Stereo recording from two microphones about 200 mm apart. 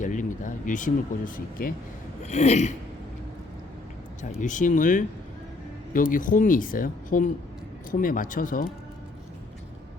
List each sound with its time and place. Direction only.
0.0 s speech: 40° left (ahead or behind)
4.2 s speech: 40° left (ahead or behind)